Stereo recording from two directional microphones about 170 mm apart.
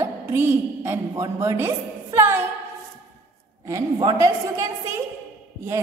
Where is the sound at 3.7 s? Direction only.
20° right (ahead or behind).